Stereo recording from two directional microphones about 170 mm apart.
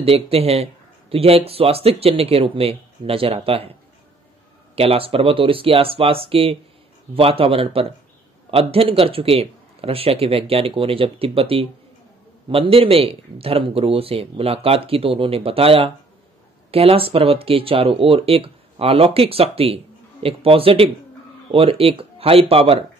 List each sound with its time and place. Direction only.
0.0 s speech: 35° right (ahead or behind)
4.7 s speech: 35° right (ahead or behind)